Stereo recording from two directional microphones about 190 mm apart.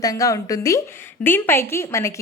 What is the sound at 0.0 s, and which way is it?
A woman's voice, 20° left (ahead or behind).